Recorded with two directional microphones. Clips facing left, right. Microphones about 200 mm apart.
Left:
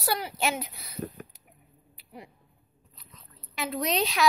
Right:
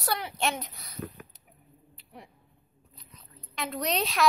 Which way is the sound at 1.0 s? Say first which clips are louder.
Left 3 dB; 40° left (ahead or behind).